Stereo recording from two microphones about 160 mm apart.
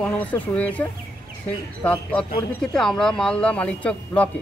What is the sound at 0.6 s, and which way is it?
Speech, 10° left (ahead or behind).